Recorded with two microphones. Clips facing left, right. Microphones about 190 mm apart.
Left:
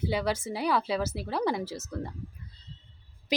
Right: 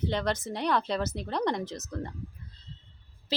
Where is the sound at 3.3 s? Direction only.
15° left (ahead or behind).